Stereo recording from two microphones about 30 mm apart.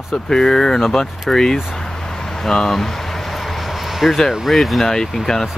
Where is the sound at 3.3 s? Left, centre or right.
Centre.